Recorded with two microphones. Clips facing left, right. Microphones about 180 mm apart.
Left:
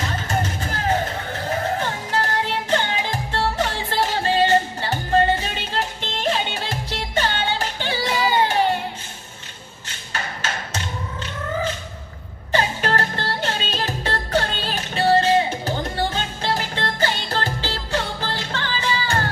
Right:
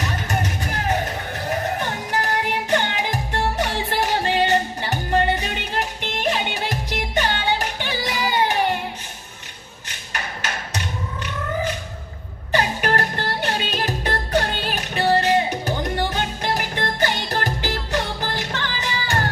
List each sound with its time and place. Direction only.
0.3 s music: 15° right (ahead or behind)
9.9 s music: 15° right (ahead or behind)